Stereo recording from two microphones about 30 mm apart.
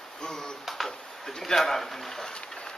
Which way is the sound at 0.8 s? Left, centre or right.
Centre.